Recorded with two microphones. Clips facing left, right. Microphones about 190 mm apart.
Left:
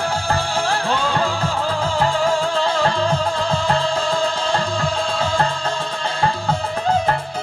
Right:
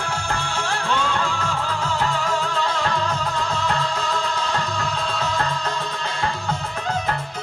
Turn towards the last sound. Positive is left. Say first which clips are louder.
# left 6 dB
turn(degrees=30)  # may be behind; listen again after turning